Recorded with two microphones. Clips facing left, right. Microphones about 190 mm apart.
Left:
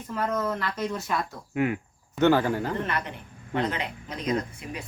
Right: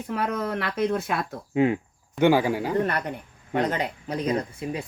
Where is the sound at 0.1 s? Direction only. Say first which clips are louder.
Even; 70° right (ahead or behind).